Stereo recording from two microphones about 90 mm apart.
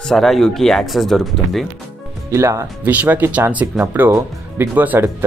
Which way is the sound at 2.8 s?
20° right (ahead or behind).